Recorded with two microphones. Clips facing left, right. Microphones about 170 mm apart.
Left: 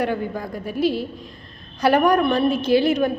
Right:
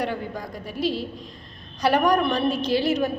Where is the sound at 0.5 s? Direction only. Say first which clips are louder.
Left 5 dB; 55° left (ahead or behind).